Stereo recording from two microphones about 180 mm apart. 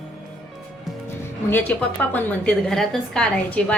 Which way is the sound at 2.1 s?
5° left (ahead or behind).